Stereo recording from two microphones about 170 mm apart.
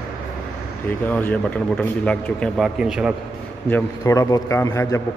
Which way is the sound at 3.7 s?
15° left (ahead or behind).